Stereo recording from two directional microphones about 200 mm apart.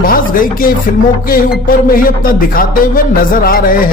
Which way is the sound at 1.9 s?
45° left (ahead or behind).